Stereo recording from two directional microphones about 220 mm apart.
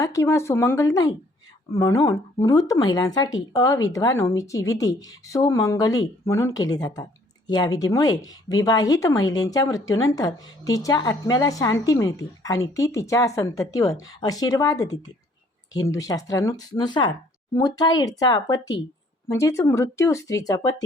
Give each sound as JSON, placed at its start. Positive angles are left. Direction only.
{"t": 0.0, "sound": "speech", "side_deg": 15}